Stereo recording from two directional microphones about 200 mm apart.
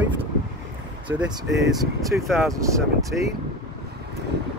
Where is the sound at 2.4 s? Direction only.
15° right (ahead or behind).